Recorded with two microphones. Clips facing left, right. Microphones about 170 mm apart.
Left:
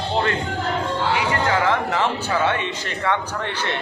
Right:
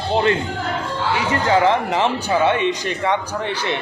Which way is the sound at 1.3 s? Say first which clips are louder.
Right 7 dB; 20° right (ahead or behind).